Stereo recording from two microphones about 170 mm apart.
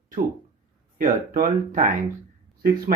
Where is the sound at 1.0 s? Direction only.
55° right (ahead or behind).